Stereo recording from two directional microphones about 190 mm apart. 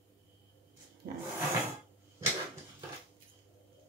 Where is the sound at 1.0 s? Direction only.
55° right (ahead or behind).